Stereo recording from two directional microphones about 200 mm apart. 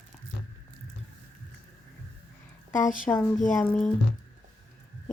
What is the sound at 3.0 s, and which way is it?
Speech, 5° left (ahead or behind).